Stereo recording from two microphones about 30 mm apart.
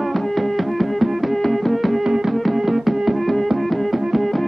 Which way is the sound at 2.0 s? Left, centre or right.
Centre.